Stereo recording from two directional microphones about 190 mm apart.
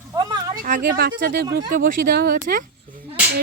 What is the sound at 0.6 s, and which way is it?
Speech, 55° right (ahead or behind).